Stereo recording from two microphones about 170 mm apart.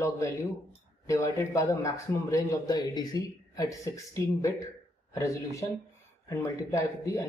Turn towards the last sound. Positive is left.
turn(degrees=15)  # may be behind; listen again after turning